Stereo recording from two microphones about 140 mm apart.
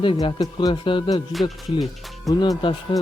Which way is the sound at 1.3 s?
Centre (ahead or behind).